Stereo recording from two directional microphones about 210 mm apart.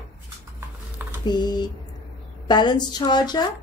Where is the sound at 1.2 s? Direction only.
20° left (ahead or behind).